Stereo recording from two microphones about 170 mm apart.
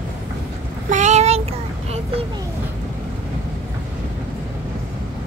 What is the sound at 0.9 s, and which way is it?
Child singing, 45° right (ahead or behind).